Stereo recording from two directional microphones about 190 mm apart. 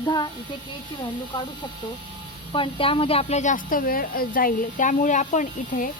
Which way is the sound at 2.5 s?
30° left (ahead or behind).